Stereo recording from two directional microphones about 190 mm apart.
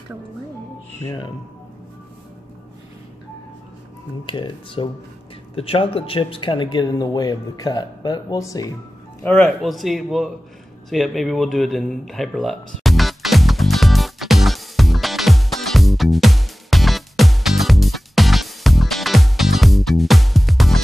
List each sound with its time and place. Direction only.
1.0 s speech: 25° left (ahead or behind)
4.3 s speech: 25° left (ahead or behind)
9.2 s a man's voice: 10° left (ahead or behind)
10.9 s a sound: centre (ahead or behind)